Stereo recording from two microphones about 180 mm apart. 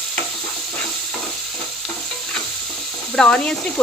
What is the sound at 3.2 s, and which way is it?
Speech, 5° left (ahead or behind).